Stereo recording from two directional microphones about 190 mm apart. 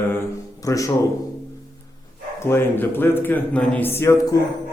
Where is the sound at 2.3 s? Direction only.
15° left (ahead or behind).